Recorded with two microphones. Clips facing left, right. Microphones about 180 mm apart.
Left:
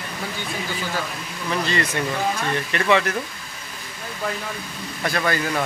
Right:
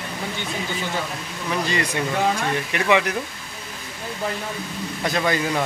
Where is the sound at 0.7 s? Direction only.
20° right (ahead or behind).